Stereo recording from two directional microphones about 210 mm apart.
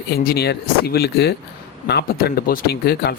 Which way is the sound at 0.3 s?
50° left (ahead or behind).